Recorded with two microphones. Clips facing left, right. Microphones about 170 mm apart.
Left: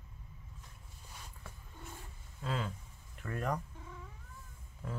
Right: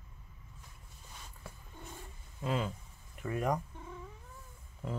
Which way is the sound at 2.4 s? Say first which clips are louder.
Right 4 dB; 15° right (ahead or behind).